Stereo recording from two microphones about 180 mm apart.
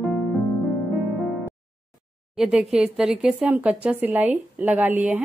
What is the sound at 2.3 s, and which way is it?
Speech, 5° right (ahead or behind).